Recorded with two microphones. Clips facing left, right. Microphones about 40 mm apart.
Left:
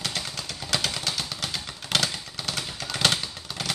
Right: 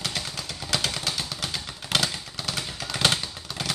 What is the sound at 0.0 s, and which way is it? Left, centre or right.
Vehicle, centre.